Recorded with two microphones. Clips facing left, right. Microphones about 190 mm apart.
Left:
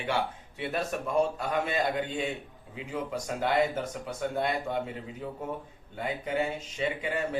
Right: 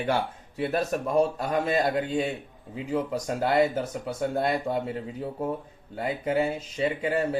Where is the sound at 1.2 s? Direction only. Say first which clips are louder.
Right 3 dB; 40° right (ahead or behind).